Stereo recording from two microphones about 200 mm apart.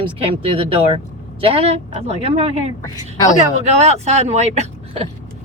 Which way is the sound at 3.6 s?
35° right (ahead or behind).